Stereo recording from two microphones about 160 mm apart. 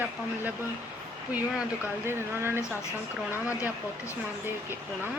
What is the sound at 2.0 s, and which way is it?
Speech, 15° right (ahead or behind).